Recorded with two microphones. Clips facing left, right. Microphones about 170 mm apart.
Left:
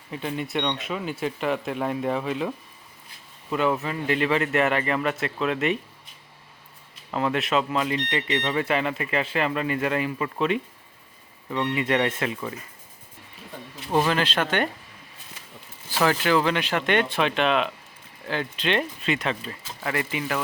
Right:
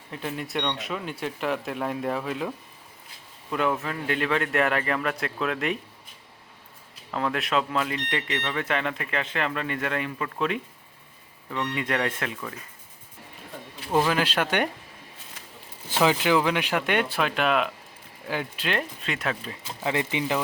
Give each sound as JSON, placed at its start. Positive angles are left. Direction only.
{"t": 0.1, "sound": "speech", "side_deg": 0}
{"t": 3.5, "sound": "speech", "side_deg": 0}
{"t": 7.1, "sound": "speech", "side_deg": 5}
{"t": 8.4, "sound": "speech", "side_deg": 10}
{"t": 14.1, "sound": "speech", "side_deg": -10}
{"t": 15.9, "sound": "speech", "side_deg": -15}
{"t": 19.8, "sound": "speech", "side_deg": -20}